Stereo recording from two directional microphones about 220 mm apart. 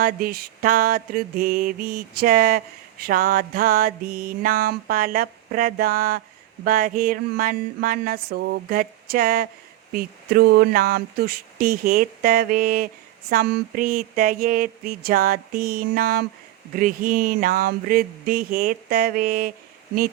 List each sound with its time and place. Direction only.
0.0 s mantra: 40° right (ahead or behind)